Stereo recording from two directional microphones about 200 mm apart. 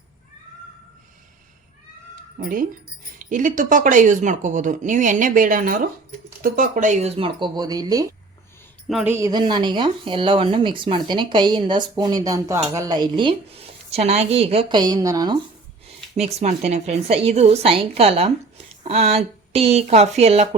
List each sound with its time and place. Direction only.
2.4 s a woman's voice: 45° right (ahead or behind); by 8.0 s 20° right (ahead or behind)
8.9 s speech: centre (ahead or behind)
9.1 s speech: 20° right (ahead or behind)
15.9 s a woman's voice: 30° right (ahead or behind)